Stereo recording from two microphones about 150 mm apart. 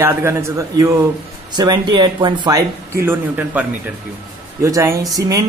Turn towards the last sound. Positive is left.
turn(degrees=-25)  # may be behind; listen again after turning